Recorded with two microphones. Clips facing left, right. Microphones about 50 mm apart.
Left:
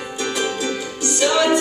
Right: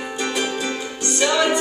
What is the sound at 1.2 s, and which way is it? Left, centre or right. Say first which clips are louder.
Music: left 2 dB; centre.